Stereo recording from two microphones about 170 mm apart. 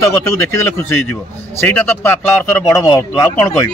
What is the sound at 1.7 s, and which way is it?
Speech, 10° left (ahead or behind).